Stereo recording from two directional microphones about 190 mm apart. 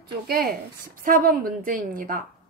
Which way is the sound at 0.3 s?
55° right (ahead or behind).